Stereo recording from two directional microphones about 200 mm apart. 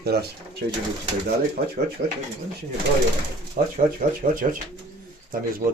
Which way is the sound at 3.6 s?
45° right (ahead or behind).